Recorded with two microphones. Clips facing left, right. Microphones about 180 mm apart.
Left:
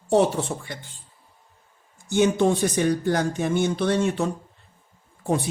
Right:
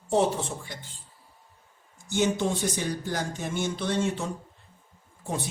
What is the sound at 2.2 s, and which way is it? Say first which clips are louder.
Speech: left 6 dB; 60° left (ahead or behind).